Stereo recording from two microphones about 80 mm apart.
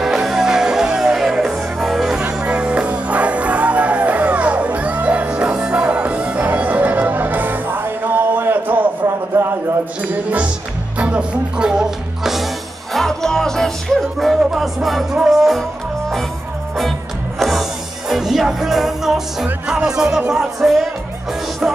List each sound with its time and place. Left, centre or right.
0.0 s music: centre
2.2 s music: centre
9.0 s a sound: right
11.0 s music: centre
17.4 s music: centre